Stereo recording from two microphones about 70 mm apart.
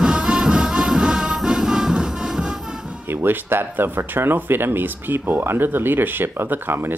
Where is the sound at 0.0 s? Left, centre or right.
Centre.